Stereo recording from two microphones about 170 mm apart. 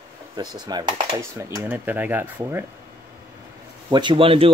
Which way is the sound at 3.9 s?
30° right (ahead or behind).